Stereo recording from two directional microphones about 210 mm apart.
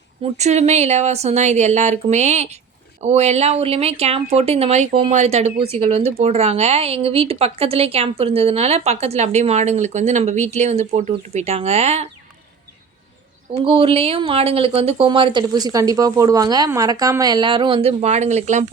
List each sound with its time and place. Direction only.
0.2 s speech: 30° right (ahead or behind)
13.7 s speech: 25° right (ahead or behind)